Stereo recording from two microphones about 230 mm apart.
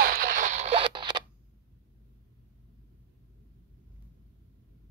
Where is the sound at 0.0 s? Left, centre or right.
Right; by 1.2 s centre.